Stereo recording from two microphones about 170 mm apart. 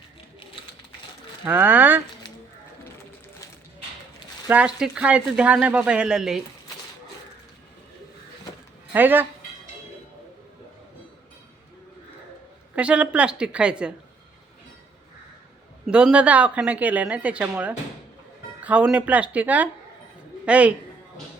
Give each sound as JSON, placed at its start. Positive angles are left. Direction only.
{"t": 1.5, "sound": "speech", "side_deg": -10}
{"t": 4.4, "sound": "speech", "side_deg": -10}
{"t": 8.9, "sound": "speech", "side_deg": -10}
{"t": 12.7, "sound": "speech", "side_deg": -5}
{"t": 15.9, "sound": "a man's voice", "side_deg": -5}